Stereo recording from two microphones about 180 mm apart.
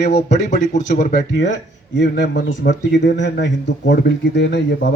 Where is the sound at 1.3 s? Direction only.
85° left.